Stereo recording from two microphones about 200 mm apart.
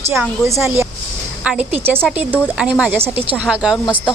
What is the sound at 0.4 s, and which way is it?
Speech, 15° right (ahead or behind).